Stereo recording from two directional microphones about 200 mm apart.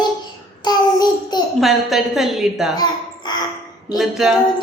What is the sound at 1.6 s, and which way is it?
A woman's voice, centre (ahead or behind).